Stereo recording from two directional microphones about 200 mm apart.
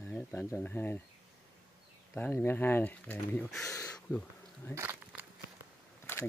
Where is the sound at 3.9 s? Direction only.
5° left (ahead or behind).